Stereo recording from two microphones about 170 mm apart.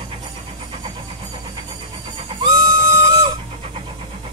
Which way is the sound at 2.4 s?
20° right (ahead or behind).